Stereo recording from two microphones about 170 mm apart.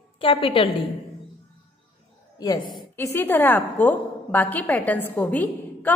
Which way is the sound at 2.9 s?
10° left (ahead or behind).